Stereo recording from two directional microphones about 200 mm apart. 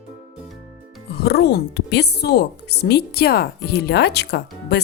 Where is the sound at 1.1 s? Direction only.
50° left (ahead or behind).